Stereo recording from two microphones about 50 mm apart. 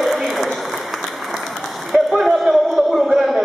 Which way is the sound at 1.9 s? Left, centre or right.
Centre.